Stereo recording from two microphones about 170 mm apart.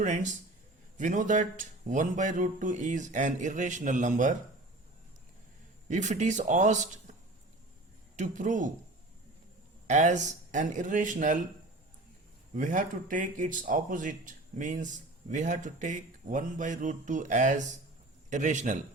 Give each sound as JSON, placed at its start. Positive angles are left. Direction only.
{"t": 0.0, "sound": "speech", "side_deg": -45}
{"t": 5.9, "sound": "speech", "side_deg": -45}
{"t": 8.1, "sound": "speech", "side_deg": -45}
{"t": 9.8, "sound": "speech", "side_deg": -45}
{"t": 12.5, "sound": "speech", "side_deg": -50}